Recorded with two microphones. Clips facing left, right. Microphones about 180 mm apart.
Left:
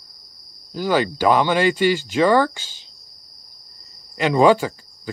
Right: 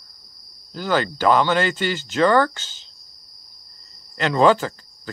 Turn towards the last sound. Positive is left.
turn(degrees=10)  # may be behind; listen again after turning